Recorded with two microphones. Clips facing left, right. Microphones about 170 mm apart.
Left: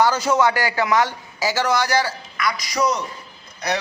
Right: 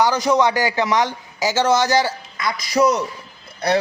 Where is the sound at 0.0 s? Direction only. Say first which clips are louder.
Right 1 dB; 15° right (ahead or behind).